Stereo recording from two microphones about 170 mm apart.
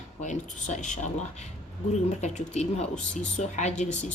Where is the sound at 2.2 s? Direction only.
40° left (ahead or behind).